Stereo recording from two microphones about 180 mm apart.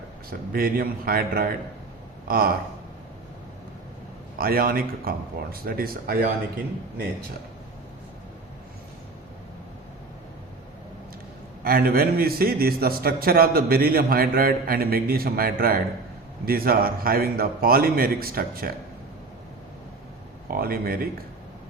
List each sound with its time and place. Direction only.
0.3 s a man's voice: 55° right (ahead or behind)
4.4 s a man's voice: 55° right (ahead or behind)
11.6 s a man's voice: 55° right (ahead or behind)
20.5 s a man's voice: 55° right (ahead or behind)